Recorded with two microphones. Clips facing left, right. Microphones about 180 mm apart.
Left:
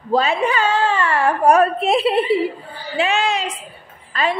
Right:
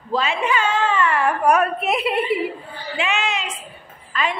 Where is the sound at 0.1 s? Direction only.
35° left (ahead or behind).